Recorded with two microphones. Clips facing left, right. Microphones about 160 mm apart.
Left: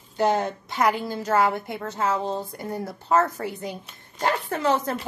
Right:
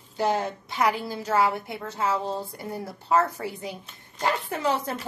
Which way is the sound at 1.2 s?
45° left (ahead or behind).